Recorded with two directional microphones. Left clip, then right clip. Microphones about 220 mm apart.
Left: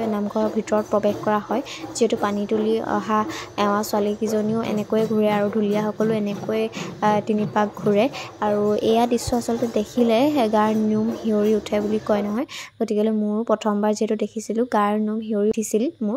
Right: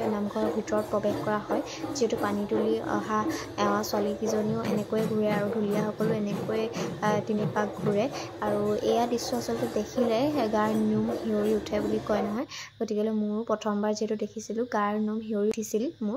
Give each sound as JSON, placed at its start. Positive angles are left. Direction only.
{"t": 0.1, "sound": "speech", "side_deg": 35}